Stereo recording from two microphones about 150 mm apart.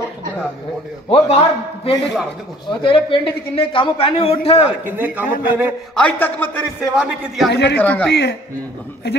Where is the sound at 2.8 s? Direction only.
35° left (ahead or behind).